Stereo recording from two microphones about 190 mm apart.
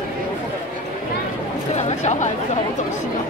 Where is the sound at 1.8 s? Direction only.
35° left (ahead or behind).